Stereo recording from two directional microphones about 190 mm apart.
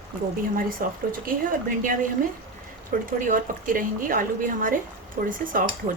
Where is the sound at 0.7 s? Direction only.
45° right (ahead or behind).